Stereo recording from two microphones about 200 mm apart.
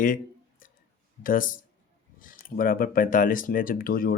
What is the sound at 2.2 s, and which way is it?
Speech, 45° left (ahead or behind).